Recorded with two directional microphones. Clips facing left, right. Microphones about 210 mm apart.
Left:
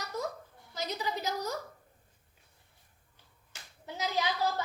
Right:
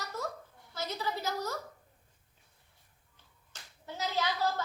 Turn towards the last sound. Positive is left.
turn(degrees=15)  # may be behind; listen again after turning